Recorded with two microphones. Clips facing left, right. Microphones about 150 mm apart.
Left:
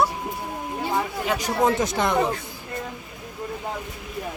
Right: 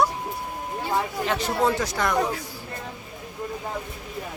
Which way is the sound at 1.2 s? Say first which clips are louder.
Left 2 dB; 15° left (ahead or behind).